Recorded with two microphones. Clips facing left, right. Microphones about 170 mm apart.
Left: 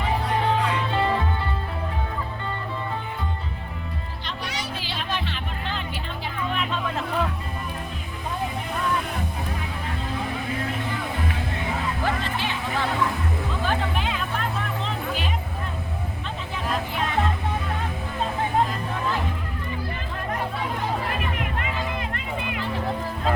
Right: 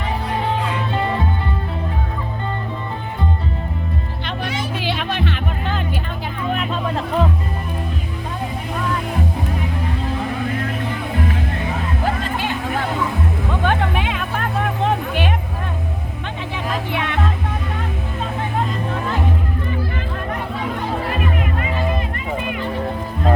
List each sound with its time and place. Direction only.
4.8 s music: 60° right (ahead or behind)
6.5 s music: 40° right (ahead or behind)
12.0 s music: 50° right (ahead or behind)
13.5 s music: 65° right (ahead or behind)
16.9 s music: 70° right (ahead or behind)